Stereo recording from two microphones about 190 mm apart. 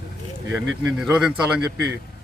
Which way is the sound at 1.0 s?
5° right (ahead or behind).